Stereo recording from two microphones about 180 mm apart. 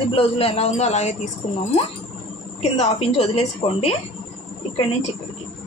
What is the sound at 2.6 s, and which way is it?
Speech, 35° left (ahead or behind).